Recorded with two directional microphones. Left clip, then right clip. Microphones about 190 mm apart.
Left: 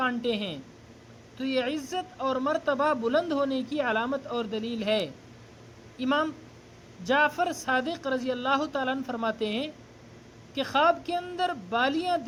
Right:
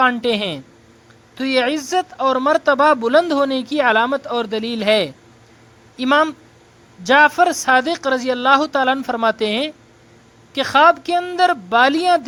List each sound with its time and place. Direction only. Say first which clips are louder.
0.0 s speech: right 12 dB; 15° right (ahead or behind)